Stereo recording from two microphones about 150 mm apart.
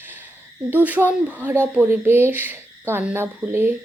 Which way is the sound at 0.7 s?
10° right (ahead or behind).